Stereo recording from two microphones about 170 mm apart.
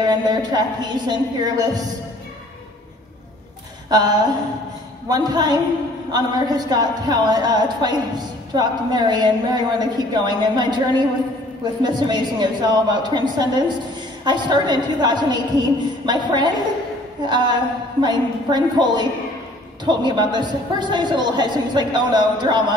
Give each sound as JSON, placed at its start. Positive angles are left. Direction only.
{"t": 0.1, "sound": "a woman's voice", "side_deg": -25}
{"t": 3.9, "sound": "a woman's voice", "side_deg": -25}